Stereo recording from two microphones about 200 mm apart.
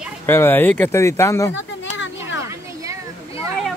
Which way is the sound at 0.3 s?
10° left (ahead or behind).